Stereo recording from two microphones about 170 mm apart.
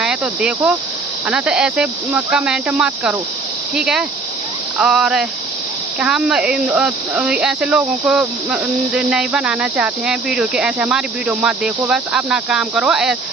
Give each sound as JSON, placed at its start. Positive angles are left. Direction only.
{"t": 0.0, "sound": "speech", "side_deg": -5}